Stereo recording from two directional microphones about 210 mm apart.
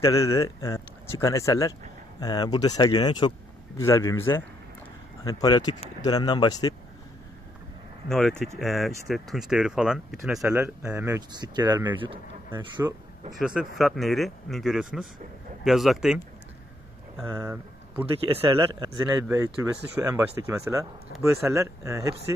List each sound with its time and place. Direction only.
0.0 s speech: 15° left (ahead or behind)
5.2 s speech: 15° left (ahead or behind)
8.1 s speech: 5° left (ahead or behind)
10.6 s speech: 15° right (ahead or behind)
11.7 s speech: 10° right (ahead or behind)
12.0 s speech: 25° right (ahead or behind)
12.5 s speech: 15° right (ahead or behind)
13.3 s speech: 5° right (ahead or behind)
17.4 s speech: 15° right (ahead or behind)
21.1 s speech: 50° left (ahead or behind)
21.5 s speech: 15° right (ahead or behind)